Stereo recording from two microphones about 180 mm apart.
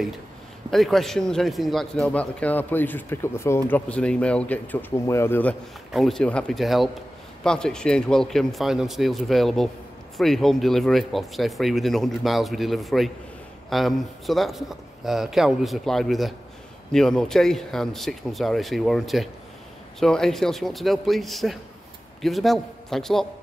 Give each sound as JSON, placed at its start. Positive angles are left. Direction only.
{"t": 0.7, "sound": "a man's voice", "side_deg": 0}